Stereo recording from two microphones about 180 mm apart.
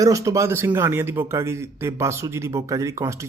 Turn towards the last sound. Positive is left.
turn(degrees=-15)  # may be behind; listen again after turning